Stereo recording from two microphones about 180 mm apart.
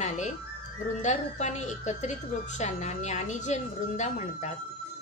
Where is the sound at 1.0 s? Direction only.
40° left (ahead or behind).